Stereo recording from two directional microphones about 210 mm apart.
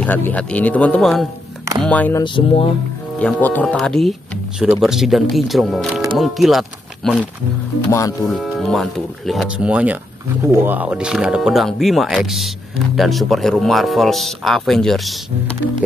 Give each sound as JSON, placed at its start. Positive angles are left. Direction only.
{"t": 0.0, "sound": "speech", "side_deg": 10}
{"t": 2.2, "sound": "speech", "side_deg": 25}
{"t": 3.2, "sound": "speech", "side_deg": 5}
{"t": 7.9, "sound": "speech", "side_deg": 15}
{"t": 8.3, "sound": "speech", "side_deg": 0}